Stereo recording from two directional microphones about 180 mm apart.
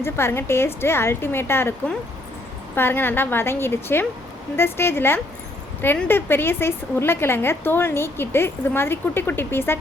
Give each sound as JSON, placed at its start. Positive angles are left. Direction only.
{"t": 0.0, "sound": "a woman's voice", "side_deg": 15}